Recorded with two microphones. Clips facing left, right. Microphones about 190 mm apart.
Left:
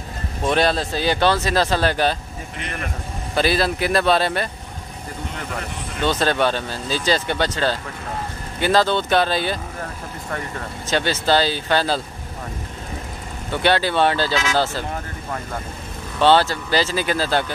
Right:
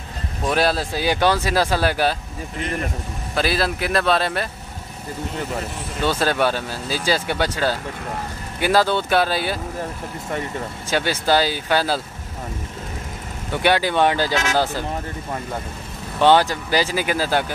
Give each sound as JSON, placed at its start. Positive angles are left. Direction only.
{"t": 0.4, "sound": "speech", "side_deg": -5}
{"t": 3.3, "sound": "speech", "side_deg": 0}
{"t": 5.9, "sound": "speech", "side_deg": -5}
{"t": 10.9, "sound": "speech", "side_deg": -10}
{"t": 13.5, "sound": "speech", "side_deg": -10}
{"t": 16.2, "sound": "speech", "side_deg": -15}